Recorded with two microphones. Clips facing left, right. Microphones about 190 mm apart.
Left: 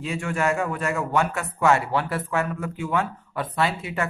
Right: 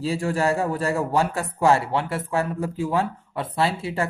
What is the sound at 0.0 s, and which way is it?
A man's voice, 35° right (ahead or behind).